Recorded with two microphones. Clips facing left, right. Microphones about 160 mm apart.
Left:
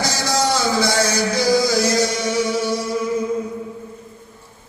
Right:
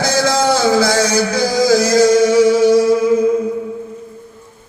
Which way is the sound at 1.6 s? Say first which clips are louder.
Right 7 dB; 90° right.